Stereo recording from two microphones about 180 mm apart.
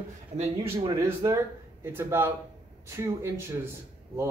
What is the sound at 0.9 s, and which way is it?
Speech, 15° right (ahead or behind).